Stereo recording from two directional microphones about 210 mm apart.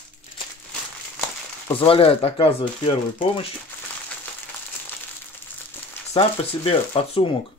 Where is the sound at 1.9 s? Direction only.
25° left (ahead or behind).